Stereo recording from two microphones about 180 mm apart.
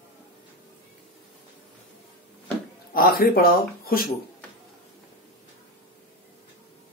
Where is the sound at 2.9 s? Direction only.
55° left (ahead or behind).